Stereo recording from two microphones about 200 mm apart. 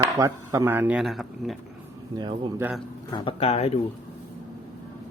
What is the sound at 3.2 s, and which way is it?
Speech, 25° left (ahead or behind).